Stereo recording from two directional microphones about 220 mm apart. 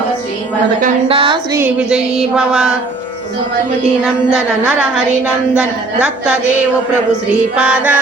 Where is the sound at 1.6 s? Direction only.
5° right (ahead or behind).